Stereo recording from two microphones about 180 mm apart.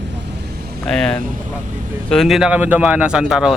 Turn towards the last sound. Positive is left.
turn(degrees=-5)  # may be behind; listen again after turning